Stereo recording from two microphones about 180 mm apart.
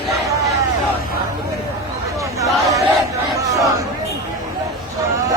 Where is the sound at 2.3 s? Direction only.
20° right (ahead or behind).